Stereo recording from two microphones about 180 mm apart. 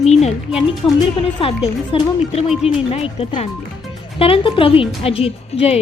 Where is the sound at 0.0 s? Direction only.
35° left (ahead or behind).